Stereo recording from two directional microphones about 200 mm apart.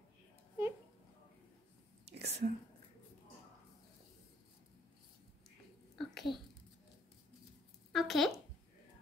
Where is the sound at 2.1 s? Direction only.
35° right (ahead or behind).